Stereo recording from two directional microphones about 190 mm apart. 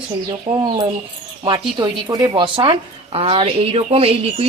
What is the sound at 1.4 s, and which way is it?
Speech, 20° right (ahead or behind).